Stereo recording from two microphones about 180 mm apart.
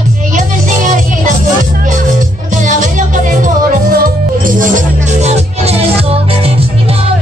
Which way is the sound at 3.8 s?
55° right (ahead or behind).